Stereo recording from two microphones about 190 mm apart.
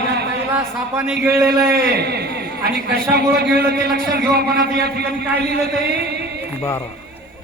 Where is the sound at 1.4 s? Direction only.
55° right (ahead or behind).